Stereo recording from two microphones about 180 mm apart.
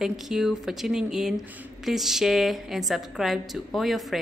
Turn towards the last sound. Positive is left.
turn(degrees=0)  # may be behind; listen again after turning